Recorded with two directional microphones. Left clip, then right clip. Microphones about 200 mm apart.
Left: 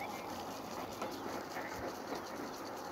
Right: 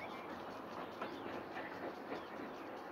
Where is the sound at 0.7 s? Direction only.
25° right (ahead or behind).